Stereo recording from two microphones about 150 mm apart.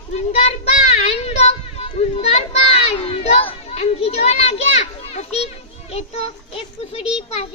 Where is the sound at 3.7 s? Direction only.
45° left (ahead or behind).